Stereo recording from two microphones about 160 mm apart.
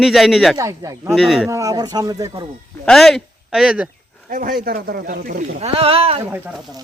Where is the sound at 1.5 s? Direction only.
20° right (ahead or behind).